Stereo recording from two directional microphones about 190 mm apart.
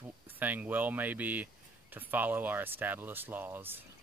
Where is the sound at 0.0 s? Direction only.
10° right (ahead or behind).